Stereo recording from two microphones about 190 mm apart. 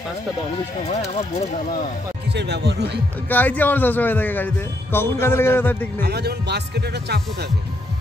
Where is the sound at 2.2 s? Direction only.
60° right (ahead or behind).